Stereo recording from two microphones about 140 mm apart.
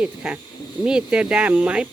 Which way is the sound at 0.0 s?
10° right (ahead or behind).